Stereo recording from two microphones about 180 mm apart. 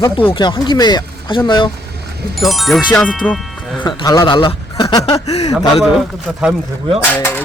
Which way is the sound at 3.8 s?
20° left (ahead or behind).